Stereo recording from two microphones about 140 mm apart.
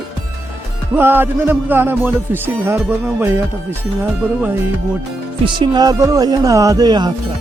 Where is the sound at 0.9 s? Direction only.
15° right (ahead or behind).